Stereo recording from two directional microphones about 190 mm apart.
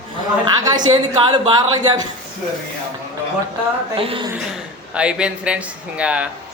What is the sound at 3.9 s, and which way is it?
Speech, 30° right (ahead or behind).